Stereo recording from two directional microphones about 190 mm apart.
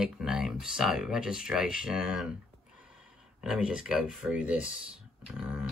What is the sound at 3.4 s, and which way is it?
Speech, 5° right (ahead or behind).